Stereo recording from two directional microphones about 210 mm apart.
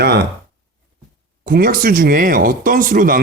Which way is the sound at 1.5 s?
40° right (ahead or behind).